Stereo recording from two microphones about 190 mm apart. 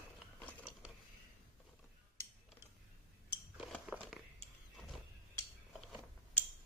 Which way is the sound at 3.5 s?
Centre (ahead or behind).